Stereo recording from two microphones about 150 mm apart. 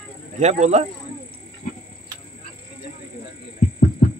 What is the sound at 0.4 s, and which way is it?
Speech, 50° right (ahead or behind).